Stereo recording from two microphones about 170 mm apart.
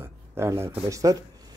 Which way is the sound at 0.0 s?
15° right (ahead or behind).